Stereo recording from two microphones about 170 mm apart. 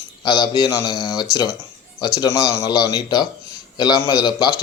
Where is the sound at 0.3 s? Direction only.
25° left (ahead or behind).